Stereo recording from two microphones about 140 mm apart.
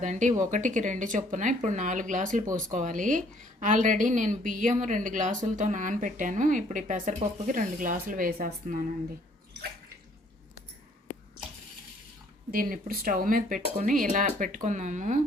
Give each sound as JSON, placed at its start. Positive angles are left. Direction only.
{"t": 0.0, "sound": "a woman's voice", "side_deg": -60}
{"t": 12.5, "sound": "a woman's voice", "side_deg": -90}